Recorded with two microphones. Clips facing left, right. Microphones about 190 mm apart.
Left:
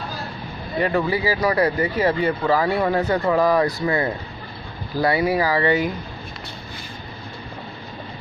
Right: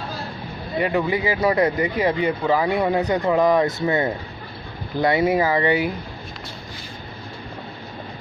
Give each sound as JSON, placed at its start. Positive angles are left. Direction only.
{"t": 0.7, "sound": "speech", "side_deg": -15}